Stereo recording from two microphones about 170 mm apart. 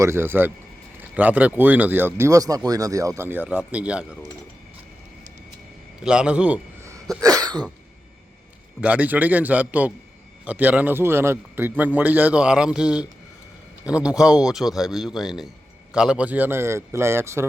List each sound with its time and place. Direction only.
0.0 s a man's voice: 15° right (ahead or behind)
6.0 s a man's voice: 5° right (ahead or behind)
7.2 s cough: 20° right (ahead or behind)
8.8 s a man's voice: 10° right (ahead or behind)